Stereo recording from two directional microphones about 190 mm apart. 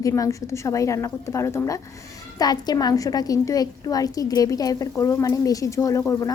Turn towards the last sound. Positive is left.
turn(degrees=15)  # may be behind; listen again after turning